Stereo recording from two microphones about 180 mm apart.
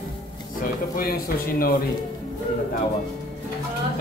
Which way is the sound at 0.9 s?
55° left (ahead or behind).